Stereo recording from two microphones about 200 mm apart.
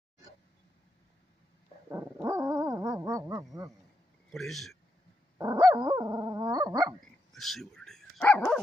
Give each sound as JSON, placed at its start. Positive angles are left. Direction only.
{"t": 1.9, "sound": "dog", "side_deg": -15}
{"t": 4.3, "sound": "a man's voice", "side_deg": 0}
{"t": 5.4, "sound": "dog", "side_deg": -20}
{"t": 7.3, "sound": "dog", "side_deg": 0}